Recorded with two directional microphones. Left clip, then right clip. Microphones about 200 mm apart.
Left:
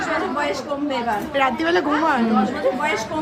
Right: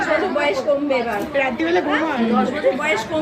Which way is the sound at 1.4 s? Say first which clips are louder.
Even; 25° left (ahead or behind).